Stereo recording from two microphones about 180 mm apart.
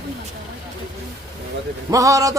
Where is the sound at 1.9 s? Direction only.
20° right (ahead or behind).